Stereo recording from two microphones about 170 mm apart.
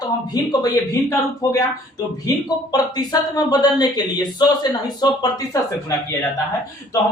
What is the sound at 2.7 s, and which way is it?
Speech, 20° left (ahead or behind).